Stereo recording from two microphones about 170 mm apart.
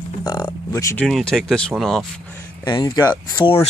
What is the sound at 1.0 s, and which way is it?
Speech, centre (ahead or behind).